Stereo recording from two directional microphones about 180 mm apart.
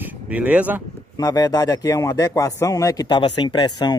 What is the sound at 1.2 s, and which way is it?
A man's voice, 20° left (ahead or behind).